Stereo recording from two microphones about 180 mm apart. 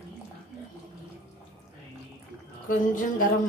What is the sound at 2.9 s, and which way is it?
Speech, 45° left (ahead or behind).